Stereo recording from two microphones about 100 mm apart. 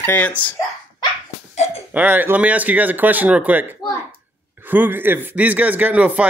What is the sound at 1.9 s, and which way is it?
Speech, 15° right (ahead or behind).